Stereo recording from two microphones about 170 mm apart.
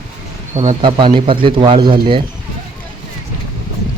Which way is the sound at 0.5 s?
35° right (ahead or behind).